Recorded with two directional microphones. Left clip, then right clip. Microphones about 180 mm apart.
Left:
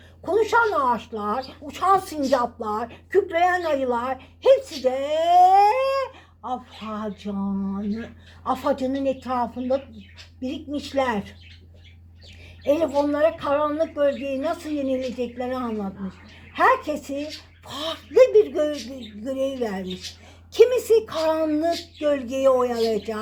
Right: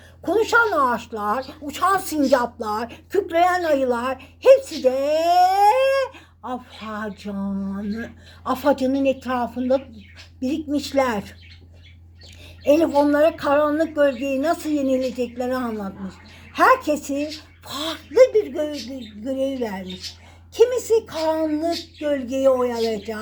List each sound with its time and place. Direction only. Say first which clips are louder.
0.3 s a woman's voice: right 2 dB; 5° right (ahead or behind)
12.6 s a woman's voice: right 4 dB; centre (ahead or behind)
16.6 s a woman's voice: right 3 dB; centre (ahead or behind); by 23.2 s 25° left (ahead or behind)